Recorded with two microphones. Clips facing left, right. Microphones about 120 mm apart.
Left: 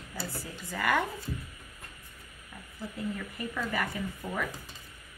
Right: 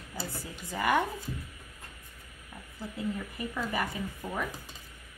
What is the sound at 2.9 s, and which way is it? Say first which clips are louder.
Speech: right 2 dB; 20° right (ahead or behind).